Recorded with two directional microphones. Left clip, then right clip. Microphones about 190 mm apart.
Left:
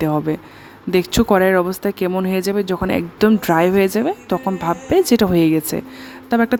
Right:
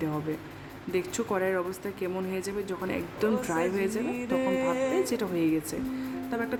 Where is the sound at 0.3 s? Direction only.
50° left (ahead or behind).